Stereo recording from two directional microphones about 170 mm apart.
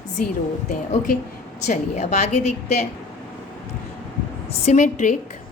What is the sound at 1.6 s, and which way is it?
A woman's voice, 45° left (ahead or behind).